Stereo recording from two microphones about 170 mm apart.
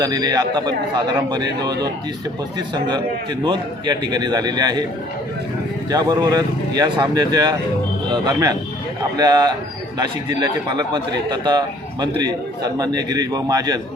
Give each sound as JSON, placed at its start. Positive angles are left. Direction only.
{"t": 0.0, "sound": "a man's voice", "side_deg": -25}
{"t": 5.9, "sound": "a man's voice", "side_deg": -25}